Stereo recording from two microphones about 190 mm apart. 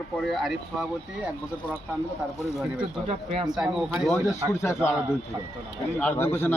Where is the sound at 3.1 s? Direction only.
30° right (ahead or behind).